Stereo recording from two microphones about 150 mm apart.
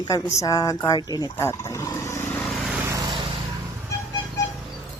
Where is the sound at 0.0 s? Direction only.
20° left (ahead or behind).